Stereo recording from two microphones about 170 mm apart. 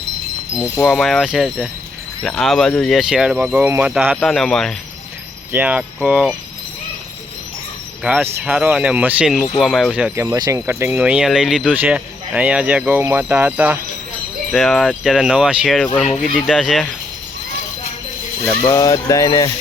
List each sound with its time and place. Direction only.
0.9 s speech: centre (ahead or behind)
5.5 s speech: 10° right (ahead or behind)
8.0 s speech: 5° right (ahead or behind)
18.6 s a sound: 20° left (ahead or behind)